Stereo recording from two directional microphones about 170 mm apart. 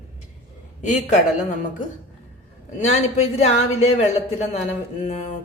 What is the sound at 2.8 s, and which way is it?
Speech, 40° left (ahead or behind).